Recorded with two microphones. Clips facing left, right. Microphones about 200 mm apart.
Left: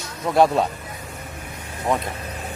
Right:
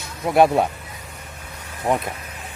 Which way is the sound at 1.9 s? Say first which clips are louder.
Right 1 dB; 20° right (ahead or behind).